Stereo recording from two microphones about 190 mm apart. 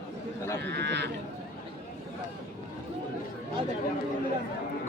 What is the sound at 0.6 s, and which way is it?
Speech, 65° right (ahead or behind).